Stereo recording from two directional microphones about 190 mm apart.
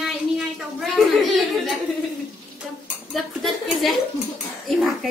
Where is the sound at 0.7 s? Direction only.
Centre (ahead or behind).